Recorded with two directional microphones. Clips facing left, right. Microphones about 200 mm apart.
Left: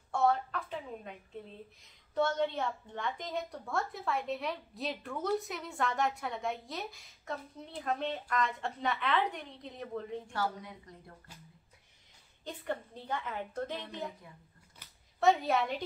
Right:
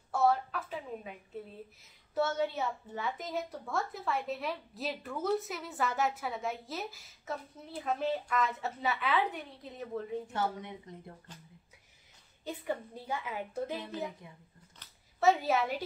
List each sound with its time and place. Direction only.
0.1 s a sound: 5° right (ahead or behind)
2.1 s a woman's voice: 5° right (ahead or behind)
10.3 s a woman's voice: 20° right (ahead or behind)
12.4 s a woman's voice: 10° right (ahead or behind)
15.1 s a woman's voice: 5° right (ahead or behind)